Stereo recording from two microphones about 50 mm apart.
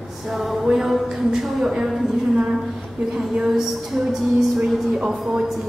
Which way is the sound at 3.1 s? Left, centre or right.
Centre.